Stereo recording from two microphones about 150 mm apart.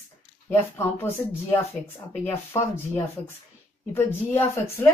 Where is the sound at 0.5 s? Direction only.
15° left (ahead or behind).